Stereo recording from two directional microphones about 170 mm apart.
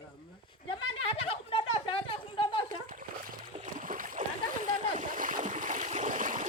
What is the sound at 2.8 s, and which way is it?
Splash, 50° right (ahead or behind).